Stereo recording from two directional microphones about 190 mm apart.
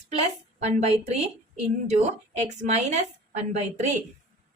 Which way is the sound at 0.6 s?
35° right (ahead or behind).